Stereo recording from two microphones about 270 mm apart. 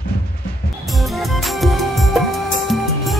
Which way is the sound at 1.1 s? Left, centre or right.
Centre.